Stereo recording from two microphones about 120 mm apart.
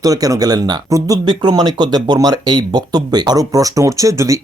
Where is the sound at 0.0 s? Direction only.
30° right (ahead or behind).